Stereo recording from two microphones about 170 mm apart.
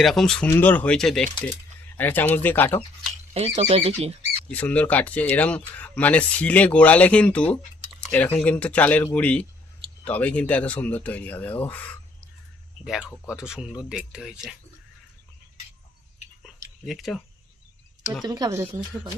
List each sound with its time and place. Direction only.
0.0 s speech: centre (ahead or behind)
3.3 s speech: 35° right (ahead or behind)
4.5 s speech: 10° left (ahead or behind)
16.8 s speech: centre (ahead or behind)
18.3 s speech: 20° right (ahead or behind)